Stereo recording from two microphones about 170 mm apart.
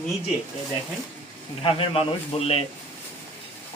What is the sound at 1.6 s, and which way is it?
A man's voice, 30° left (ahead or behind).